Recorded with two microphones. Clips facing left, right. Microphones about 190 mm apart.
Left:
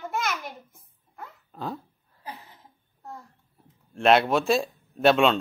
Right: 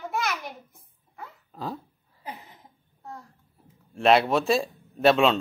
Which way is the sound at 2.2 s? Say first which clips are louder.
Right 1 dB; 20° right (ahead or behind).